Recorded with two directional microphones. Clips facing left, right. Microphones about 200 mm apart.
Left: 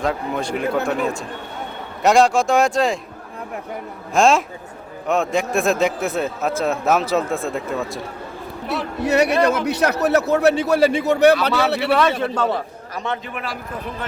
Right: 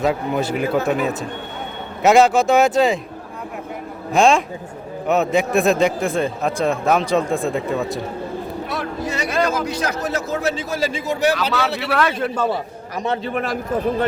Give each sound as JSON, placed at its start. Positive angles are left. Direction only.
{"t": 0.0, "sound": "a man's voice", "side_deg": -5}
{"t": 4.1, "sound": "a man's voice", "side_deg": 0}
{"t": 9.0, "sound": "a man's voice", "side_deg": 65}
{"t": 11.8, "sound": "a man's voice", "side_deg": 0}
{"t": 13.2, "sound": "a man's voice", "side_deg": -40}